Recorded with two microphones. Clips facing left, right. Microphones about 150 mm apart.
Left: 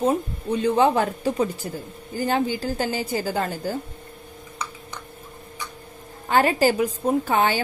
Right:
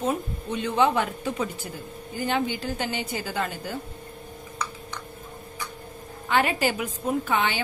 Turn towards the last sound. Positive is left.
turn(degrees=40)  # may be behind; listen again after turning